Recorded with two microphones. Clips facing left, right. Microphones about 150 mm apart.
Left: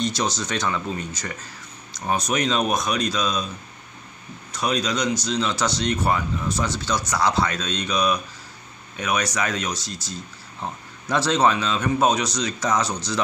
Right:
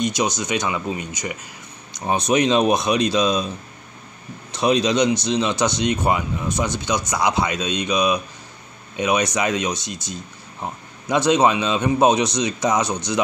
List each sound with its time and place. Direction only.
0.0 s speech: 15° right (ahead or behind)
4.5 s speech: 25° right (ahead or behind)